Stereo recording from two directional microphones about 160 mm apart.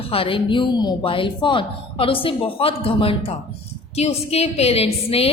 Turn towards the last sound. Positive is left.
turn(degrees=40)  # may be behind; listen again after turning